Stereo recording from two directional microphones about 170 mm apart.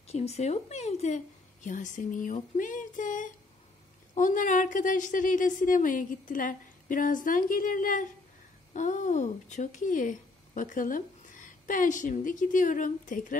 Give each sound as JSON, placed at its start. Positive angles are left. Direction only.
{"t": 0.1, "sound": "a woman's voice", "side_deg": 40}